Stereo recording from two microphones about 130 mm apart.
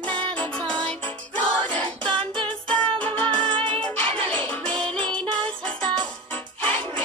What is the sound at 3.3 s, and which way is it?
Music, 35° right (ahead or behind).